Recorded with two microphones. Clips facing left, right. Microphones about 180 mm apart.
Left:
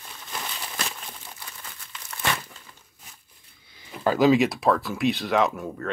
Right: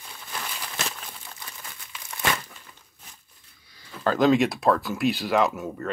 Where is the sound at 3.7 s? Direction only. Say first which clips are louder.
Left 1 dB; 20° left (ahead or behind).